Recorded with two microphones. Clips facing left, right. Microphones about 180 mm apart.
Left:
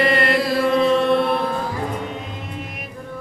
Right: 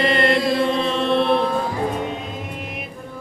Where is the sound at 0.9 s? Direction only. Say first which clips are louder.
Left 1 dB; 25° right (ahead or behind).